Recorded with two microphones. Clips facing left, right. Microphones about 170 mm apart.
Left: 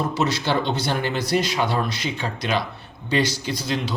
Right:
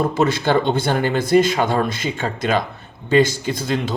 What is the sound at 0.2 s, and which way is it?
Speech, 50° right (ahead or behind).